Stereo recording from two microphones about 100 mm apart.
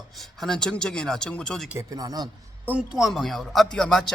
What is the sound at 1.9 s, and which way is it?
Speech, 40° right (ahead or behind).